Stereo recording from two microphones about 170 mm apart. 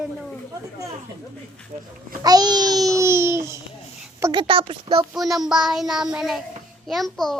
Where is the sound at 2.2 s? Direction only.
25° right (ahead or behind).